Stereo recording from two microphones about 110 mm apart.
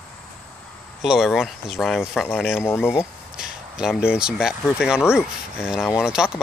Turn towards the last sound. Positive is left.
turn(degrees=-5)  # may be behind; listen again after turning